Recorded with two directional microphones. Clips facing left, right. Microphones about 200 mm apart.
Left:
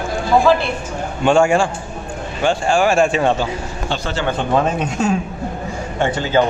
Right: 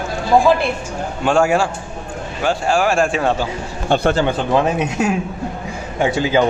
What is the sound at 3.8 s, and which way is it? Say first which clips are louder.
Speech: right 9 dB; 55° right (ahead or behind).